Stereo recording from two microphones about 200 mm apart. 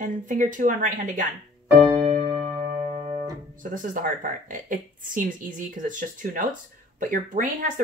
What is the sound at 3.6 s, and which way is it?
A woman's voice, 40° right (ahead or behind).